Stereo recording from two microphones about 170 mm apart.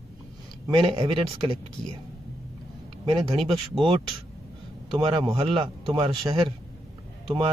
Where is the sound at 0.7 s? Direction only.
35° right (ahead or behind).